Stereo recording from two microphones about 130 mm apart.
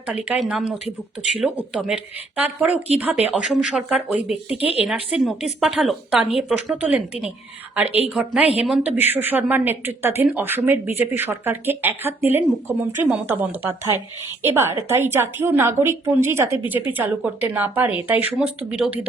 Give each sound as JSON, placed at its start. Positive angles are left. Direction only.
{"t": 0.1, "sound": "a woman's voice", "side_deg": -10}